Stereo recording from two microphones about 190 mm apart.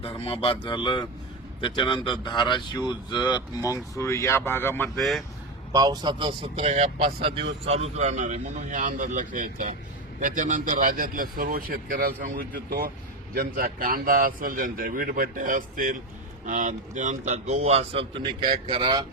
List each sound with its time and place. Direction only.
0.0 s speech: 30° left (ahead or behind); by 5.0 s 10° left (ahead or behind)
5.7 s a man's voice: 20° right (ahead or behind)
18.4 s a man's voice: 40° right (ahead or behind)
18.7 s a man's voice: 25° right (ahead or behind)